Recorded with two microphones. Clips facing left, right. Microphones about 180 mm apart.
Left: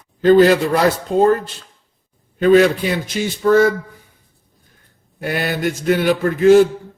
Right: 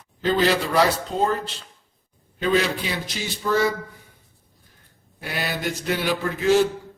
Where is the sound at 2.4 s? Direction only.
50° left (ahead or behind).